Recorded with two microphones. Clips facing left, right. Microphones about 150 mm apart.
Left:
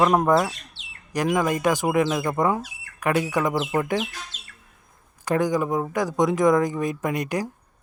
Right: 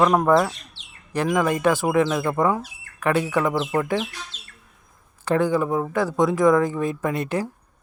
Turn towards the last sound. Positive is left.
turn(degrees=15)  # may be behind; listen again after turning